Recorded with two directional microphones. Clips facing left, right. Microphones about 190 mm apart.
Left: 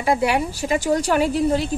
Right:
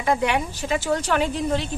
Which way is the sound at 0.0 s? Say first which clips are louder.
Left 2 dB; 10° left (ahead or behind).